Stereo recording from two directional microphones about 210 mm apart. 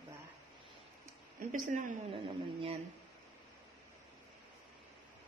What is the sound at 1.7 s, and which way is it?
Speech, 40° right (ahead or behind).